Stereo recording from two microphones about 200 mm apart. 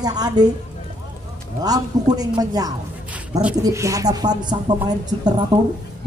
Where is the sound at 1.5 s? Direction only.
20° right (ahead or behind).